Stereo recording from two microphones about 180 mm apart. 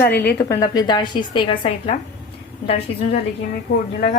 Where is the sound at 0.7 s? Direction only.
25° left (ahead or behind).